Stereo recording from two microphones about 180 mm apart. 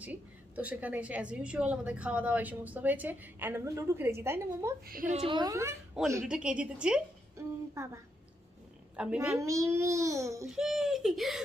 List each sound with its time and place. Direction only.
0.0 s a woman's voice: 10° right (ahead or behind)
4.8 s a woman's voice: 50° right (ahead or behind)
5.2 s a woman's voice: 25° right (ahead or behind)
6.2 s a woman's voice: 5° right (ahead or behind)
10.5 s speech: centre (ahead or behind)